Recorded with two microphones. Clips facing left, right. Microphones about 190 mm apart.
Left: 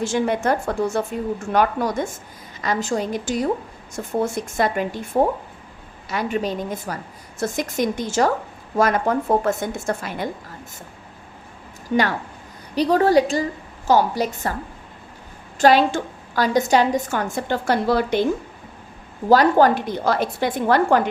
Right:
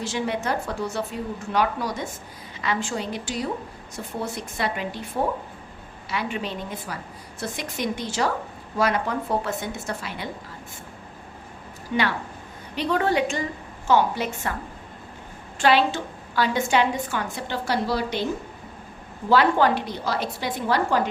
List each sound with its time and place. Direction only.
0.0 s a woman's voice: 50° left (ahead or behind)
11.9 s a woman's voice: 45° left (ahead or behind)
15.5 s a woman's voice: 40° left (ahead or behind)
19.3 s a woman's voice: 40° left (ahead or behind)